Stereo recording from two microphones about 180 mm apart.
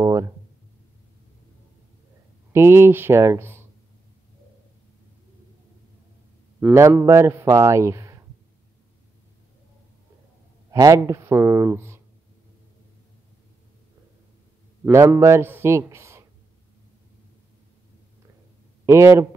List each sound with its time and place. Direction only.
0.0 s a sound: 20° right (ahead or behind)
2.5 s a man's voice: 15° right (ahead or behind)
6.6 s a man's voice: 15° right (ahead or behind)
10.7 s a man's voice: 20° right (ahead or behind)
14.9 s a man's voice: 15° right (ahead or behind)
18.9 s a man's voice: 15° right (ahead or behind)